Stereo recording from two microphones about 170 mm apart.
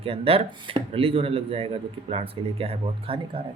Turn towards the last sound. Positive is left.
turn(degrees=-30)  # may be behind; listen again after turning